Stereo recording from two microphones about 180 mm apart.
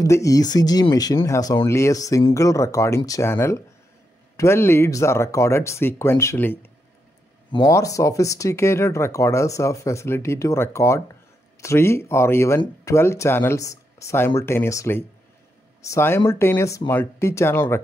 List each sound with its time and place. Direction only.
0.0 s speech: 15° left (ahead or behind)